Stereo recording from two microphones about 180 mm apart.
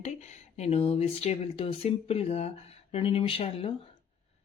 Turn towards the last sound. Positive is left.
turn(degrees=30)  # may be behind; listen again after turning